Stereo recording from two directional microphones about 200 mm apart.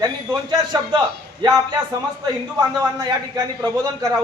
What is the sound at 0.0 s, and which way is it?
Speech, 20° right (ahead or behind).